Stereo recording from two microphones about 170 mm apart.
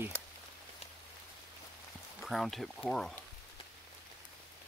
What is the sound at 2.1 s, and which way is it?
Speech, centre (ahead or behind).